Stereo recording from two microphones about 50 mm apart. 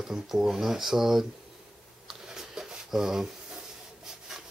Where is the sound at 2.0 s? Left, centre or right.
Centre.